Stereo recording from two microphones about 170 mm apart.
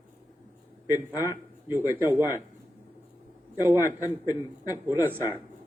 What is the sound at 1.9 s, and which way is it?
Speech, 15° right (ahead or behind).